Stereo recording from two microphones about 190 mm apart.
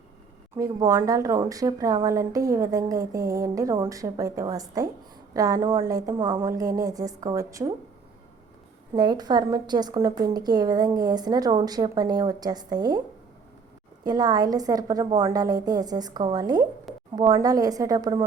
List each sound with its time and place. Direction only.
0.5 s a woman's voice: 15° right (ahead or behind)
6.4 s a woman's voice: 15° right (ahead or behind)
9.0 s a woman's voice: 20° right (ahead or behind)
14.0 s a woman's voice: 20° right (ahead or behind)